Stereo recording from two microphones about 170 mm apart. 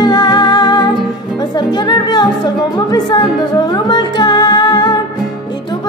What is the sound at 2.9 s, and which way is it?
Speech, 25° left (ahead or behind).